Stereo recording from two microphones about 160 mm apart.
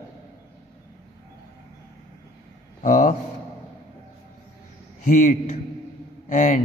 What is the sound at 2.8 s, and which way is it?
Speech, 50° left (ahead or behind).